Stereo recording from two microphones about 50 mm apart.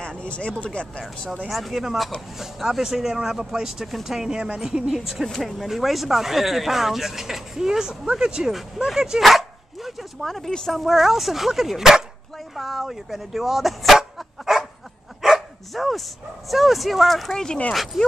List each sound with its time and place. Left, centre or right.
0.0 s speech: left
1.5 s speech: centre
8.5 s speech: centre
9.2 s dog: centre
10.2 s speech: centre
14.1 s dog: centre
16.4 s speech: centre
17.3 s speech: centre
17.9 s speech: centre